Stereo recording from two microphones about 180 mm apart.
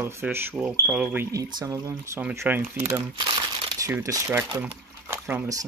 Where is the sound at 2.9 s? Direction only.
20° right (ahead or behind).